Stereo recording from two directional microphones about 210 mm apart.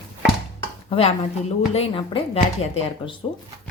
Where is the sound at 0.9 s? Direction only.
25° left (ahead or behind).